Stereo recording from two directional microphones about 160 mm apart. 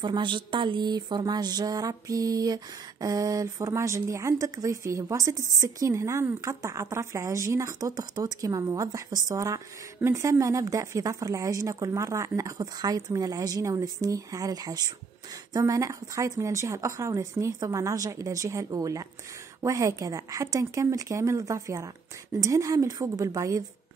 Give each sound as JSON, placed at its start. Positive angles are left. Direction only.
{"t": 0.0, "sound": "music", "side_deg": -30}